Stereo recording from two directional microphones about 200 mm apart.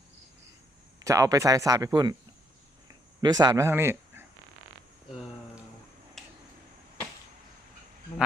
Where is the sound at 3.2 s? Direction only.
20° right (ahead or behind).